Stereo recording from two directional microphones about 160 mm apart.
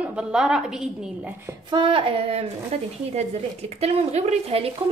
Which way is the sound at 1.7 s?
35° right (ahead or behind).